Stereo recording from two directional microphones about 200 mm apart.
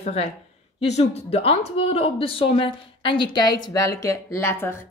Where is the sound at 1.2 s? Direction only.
30° left (ahead or behind); by 4.8 s 10° left (ahead or behind).